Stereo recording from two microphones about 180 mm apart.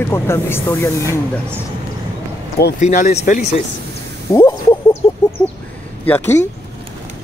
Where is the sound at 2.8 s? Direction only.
40° left (ahead or behind).